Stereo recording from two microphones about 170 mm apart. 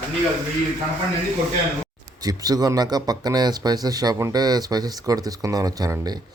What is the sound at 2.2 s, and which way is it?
Speech, 20° right (ahead or behind).